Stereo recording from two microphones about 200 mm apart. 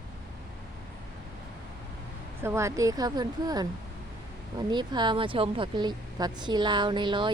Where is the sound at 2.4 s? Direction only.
10° right (ahead or behind).